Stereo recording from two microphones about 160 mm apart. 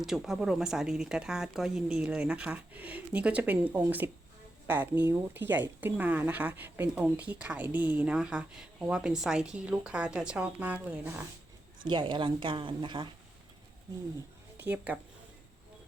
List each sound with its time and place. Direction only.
0.0 s speech: 5° right (ahead or behind)
11.9 s a woman's voice: 30° right (ahead or behind)
14.6 s speech: 10° right (ahead or behind)